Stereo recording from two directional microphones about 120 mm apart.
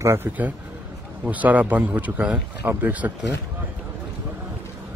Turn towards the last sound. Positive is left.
turn(degrees=-15)  # may be behind; listen again after turning